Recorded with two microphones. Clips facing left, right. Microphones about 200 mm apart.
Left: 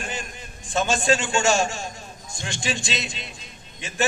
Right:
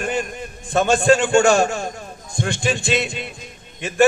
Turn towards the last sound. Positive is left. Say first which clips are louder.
# right 10 dB
turn(degrees=-60)  # may be behind; listen again after turning